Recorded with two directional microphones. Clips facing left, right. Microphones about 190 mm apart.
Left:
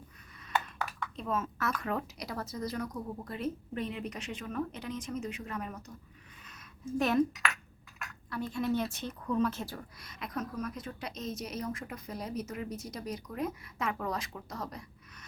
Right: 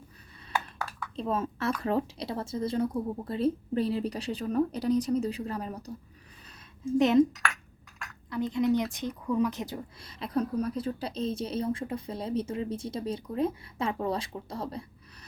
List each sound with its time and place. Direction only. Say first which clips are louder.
1.1 s a woman's voice: right 6 dB; 30° right (ahead or behind)
7.0 s a woman's voice: right 6 dB; 20° right (ahead or behind)
8.3 s speech: right 6 dB; 20° right (ahead or behind)
10.1 s a woman's voice: right 8 dB; 30° right (ahead or behind)